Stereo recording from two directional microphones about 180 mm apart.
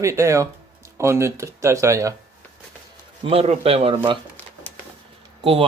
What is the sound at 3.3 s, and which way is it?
Speech, 30° right (ahead or behind).